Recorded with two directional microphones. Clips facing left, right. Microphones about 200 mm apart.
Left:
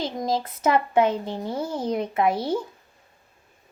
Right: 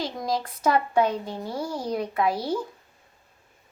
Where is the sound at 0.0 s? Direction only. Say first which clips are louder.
Left 2 dB; 25° left (ahead or behind).